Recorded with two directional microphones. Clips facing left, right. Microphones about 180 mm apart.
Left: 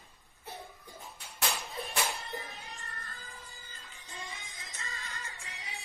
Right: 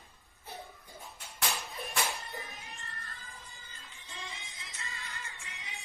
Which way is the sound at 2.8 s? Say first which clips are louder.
Left 1 dB; 35° left (ahead or behind).